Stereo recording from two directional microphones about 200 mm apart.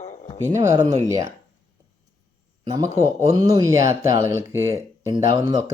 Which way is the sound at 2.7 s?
20° right (ahead or behind).